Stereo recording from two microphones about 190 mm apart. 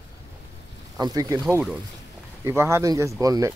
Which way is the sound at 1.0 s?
20° right (ahead or behind).